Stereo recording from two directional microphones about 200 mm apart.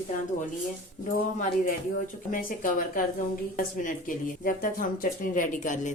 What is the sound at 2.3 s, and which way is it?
Speech, 45° left (ahead or behind).